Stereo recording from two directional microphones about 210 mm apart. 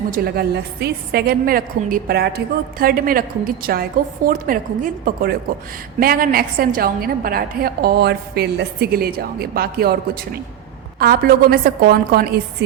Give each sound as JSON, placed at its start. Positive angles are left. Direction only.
{"t": 0.1, "sound": "a woman's voice", "side_deg": -50}